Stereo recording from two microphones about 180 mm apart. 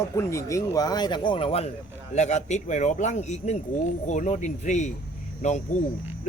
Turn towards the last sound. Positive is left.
turn(degrees=40)  # may be behind; listen again after turning